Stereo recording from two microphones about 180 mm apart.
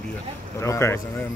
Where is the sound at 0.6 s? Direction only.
15° left (ahead or behind).